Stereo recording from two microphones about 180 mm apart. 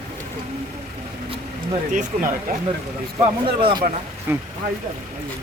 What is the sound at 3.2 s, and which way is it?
Speech, 30° right (ahead or behind).